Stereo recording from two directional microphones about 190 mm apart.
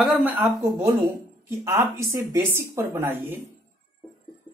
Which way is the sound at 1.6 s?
15° right (ahead or behind).